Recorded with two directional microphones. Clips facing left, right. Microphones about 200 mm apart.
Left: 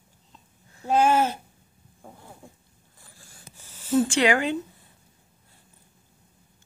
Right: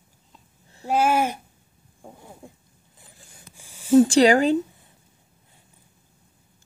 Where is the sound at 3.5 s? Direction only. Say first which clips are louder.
Right 7 dB; 10° right (ahead or behind).